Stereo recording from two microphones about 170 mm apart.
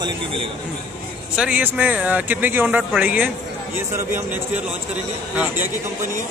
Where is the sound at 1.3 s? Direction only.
5° right (ahead or behind).